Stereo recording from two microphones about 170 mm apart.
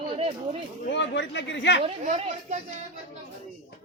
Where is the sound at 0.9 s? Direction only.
90° left.